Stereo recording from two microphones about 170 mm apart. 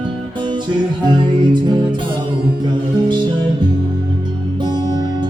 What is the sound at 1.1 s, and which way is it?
Music, 25° right (ahead or behind).